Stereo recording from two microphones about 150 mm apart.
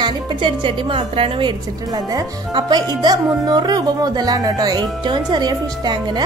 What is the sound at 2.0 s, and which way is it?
A woman's voice, 25° right (ahead or behind).